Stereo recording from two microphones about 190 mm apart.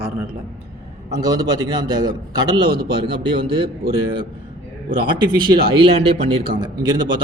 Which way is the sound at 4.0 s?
25° right (ahead or behind).